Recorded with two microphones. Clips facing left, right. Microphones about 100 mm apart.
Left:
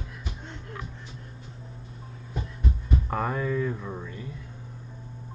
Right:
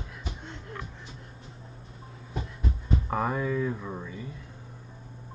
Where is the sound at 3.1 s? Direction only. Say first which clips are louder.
Even; 5° right (ahead or behind).